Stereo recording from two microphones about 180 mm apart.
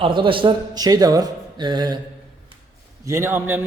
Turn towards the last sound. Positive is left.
turn(degrees=-10)  # may be behind; listen again after turning